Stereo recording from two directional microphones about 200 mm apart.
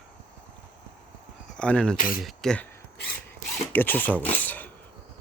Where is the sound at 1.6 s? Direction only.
5° left (ahead or behind).